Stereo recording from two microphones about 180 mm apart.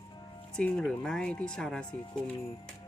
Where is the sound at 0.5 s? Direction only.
5° left (ahead or behind).